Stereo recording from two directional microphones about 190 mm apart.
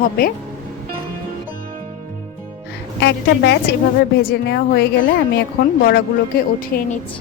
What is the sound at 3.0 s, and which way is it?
A woman's voice, 65° left (ahead or behind).